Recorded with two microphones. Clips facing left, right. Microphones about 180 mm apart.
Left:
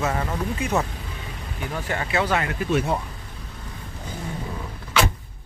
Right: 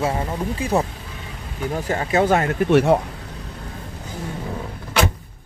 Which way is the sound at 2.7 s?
75° right (ahead or behind).